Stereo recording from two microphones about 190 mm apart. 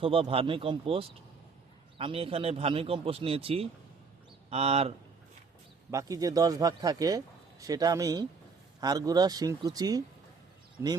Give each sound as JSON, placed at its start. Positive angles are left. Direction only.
{"t": 0.0, "sound": "a man's voice", "side_deg": -30}
{"t": 5.9, "sound": "a man's voice", "side_deg": -15}